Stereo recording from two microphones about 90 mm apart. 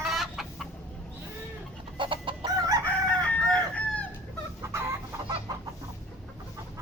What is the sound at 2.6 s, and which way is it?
Chicken, 45° right (ahead or behind).